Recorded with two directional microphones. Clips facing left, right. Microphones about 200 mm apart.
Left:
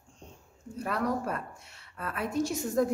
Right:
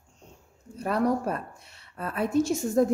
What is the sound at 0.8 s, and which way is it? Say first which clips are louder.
A woman's voice: right 5 dB; 35° right (ahead or behind).